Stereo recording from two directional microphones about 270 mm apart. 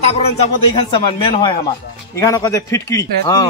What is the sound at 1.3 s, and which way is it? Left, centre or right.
A man's voice, centre.